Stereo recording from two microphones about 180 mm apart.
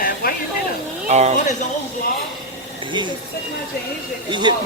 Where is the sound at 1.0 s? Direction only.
40° right (ahead or behind).